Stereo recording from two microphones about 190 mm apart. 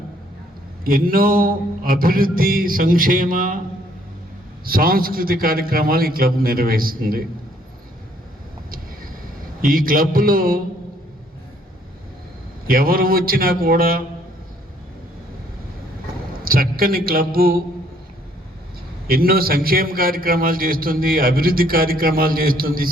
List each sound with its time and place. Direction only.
0.9 s a man's voice: 50° right (ahead or behind)
4.6 s a man's voice: 50° right (ahead or behind)
8.7 s a sound: 45° right (ahead or behind)
12.6 s a man's voice: 50° right (ahead or behind)
16.4 s a man's voice: 50° right (ahead or behind)
19.0 s a man's voice: 50° right (ahead or behind)